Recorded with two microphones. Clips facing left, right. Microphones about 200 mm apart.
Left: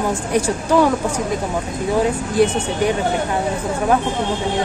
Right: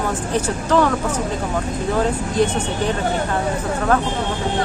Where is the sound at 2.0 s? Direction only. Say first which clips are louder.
Left 3 dB; 10° left (ahead or behind).